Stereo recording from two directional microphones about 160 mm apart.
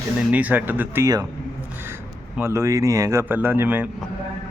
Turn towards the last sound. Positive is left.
turn(degrees=-10)  # may be behind; listen again after turning